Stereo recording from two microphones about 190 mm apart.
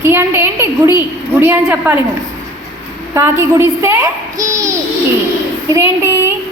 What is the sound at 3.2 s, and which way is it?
A child's voice, 15° right (ahead or behind).